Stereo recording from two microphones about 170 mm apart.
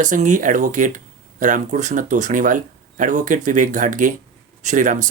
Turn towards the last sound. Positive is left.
turn(degrees=-50)  # may be behind; listen again after turning